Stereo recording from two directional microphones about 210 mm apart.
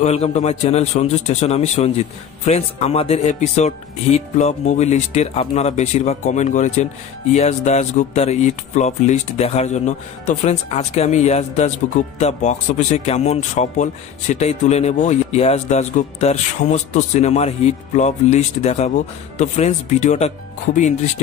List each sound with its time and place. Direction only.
0.0 s a man's voice: 30° left (ahead or behind)